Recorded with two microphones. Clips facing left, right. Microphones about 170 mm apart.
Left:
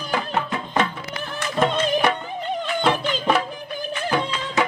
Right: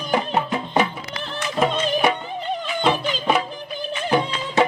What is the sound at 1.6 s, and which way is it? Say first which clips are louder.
Music: even; 5° right (ahead or behind).